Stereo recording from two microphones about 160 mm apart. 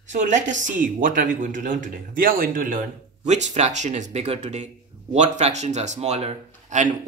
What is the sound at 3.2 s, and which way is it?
Speech, 45° right (ahead or behind).